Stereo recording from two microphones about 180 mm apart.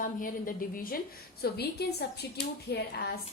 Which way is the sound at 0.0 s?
50° left (ahead or behind).